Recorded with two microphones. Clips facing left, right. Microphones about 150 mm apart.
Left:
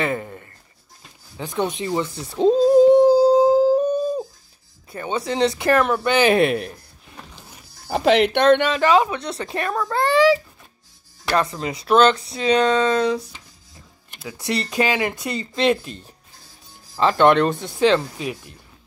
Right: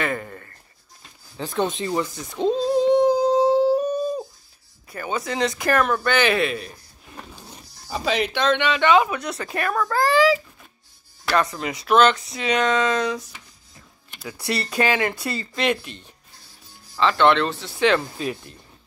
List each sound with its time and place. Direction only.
0.0 s a sound: 20° left (ahead or behind)
1.3 s speech: 15° left (ahead or behind)
2.5 s a sound: 45° left (ahead or behind)
3.1 s a sound: 30° left (ahead or behind)
3.4 s music: centre (ahead or behind)
4.9 s speech: 25° left (ahead or behind)
6.2 s speech: 50° left (ahead or behind)
7.9 s speech: 70° left (ahead or behind); by 13.4 s 30° left (ahead or behind)
14.4 s speech: 20° left (ahead or behind)
15.6 s speech: 30° left (ahead or behind); by 17.8 s 50° left (ahead or behind)
18.1 s speech: 15° left (ahead or behind)